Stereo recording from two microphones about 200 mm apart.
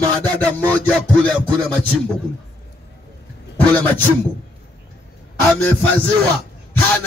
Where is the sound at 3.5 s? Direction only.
10° left (ahead or behind).